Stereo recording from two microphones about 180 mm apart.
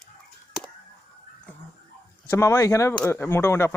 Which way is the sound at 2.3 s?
15° left (ahead or behind).